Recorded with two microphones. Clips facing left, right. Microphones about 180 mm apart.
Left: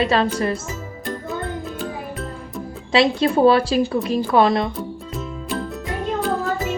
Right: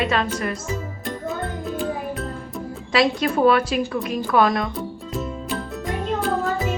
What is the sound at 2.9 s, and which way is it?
Speech, 30° left (ahead or behind).